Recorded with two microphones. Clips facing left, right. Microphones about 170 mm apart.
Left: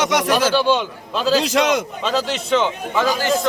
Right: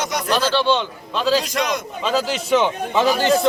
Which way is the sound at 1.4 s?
80° left.